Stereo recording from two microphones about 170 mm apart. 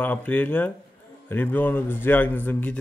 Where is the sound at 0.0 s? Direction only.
10° left (ahead or behind).